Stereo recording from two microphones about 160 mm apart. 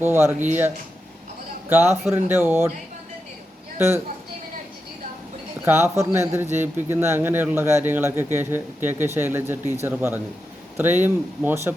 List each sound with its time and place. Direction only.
0.0 s a man's voice: 15° right (ahead or behind)
1.7 s a man's voice: 15° right (ahead or behind)
3.8 s a man's voice: 15° right (ahead or behind)
5.6 s a man's voice: 15° right (ahead or behind)